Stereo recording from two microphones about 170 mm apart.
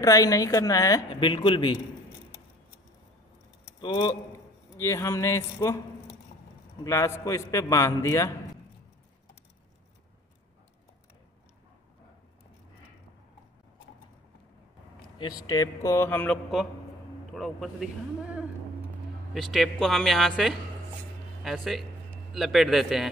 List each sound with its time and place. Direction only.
0.0 s a woman's voice: 20° left (ahead or behind)
3.8 s a woman's voice: 25° left (ahead or behind)
6.8 s a man's voice: 20° left (ahead or behind)
15.1 s a woman's voice: 25° left (ahead or behind)
17.3 s speech: centre (ahead or behind)
19.3 s speech: centre (ahead or behind)